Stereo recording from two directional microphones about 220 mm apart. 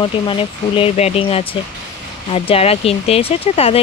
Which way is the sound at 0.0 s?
25° left (ahead or behind).